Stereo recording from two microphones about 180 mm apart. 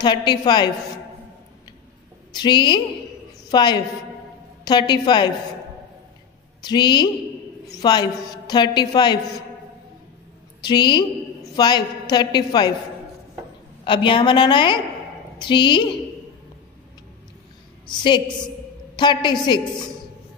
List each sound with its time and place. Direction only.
0.0 s a woman's voice: 25° left (ahead or behind)
2.3 s a woman's voice: 25° left (ahead or behind)
6.6 s a woman's voice: 25° left (ahead or behind)
10.6 s a woman's voice: 25° left (ahead or behind)
13.8 s a woman's voice: 25° left (ahead or behind)
17.8 s a woman's voice: 25° left (ahead or behind)